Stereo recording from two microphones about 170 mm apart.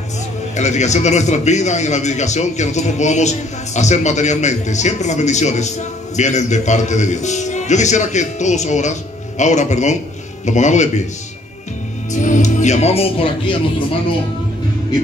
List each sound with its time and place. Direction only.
0.6 s a man's voice: 45° left (ahead or behind)
12.1 s speech: 45° left (ahead or behind)